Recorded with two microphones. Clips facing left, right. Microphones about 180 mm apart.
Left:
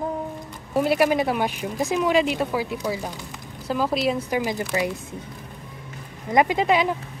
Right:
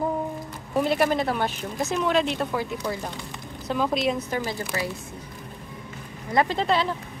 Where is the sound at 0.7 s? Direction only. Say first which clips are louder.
Left 2 dB; 10° left (ahead or behind).